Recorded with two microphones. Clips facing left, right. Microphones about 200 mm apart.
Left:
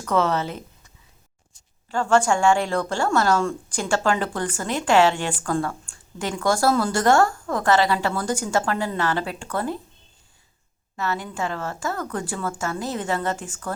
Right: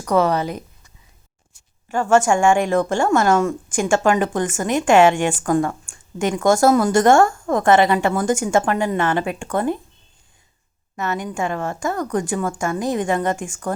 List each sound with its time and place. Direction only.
0.0 s speech: 15° right (ahead or behind)
1.9 s speech: 15° right (ahead or behind)
10.9 s speech: 20° right (ahead or behind)